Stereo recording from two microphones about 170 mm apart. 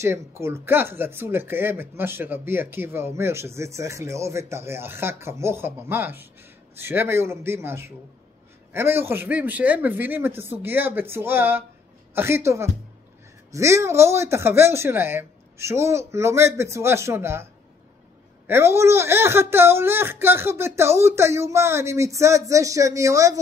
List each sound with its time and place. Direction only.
0.0 s speech: 15° right (ahead or behind)
18.5 s speech: 15° right (ahead or behind)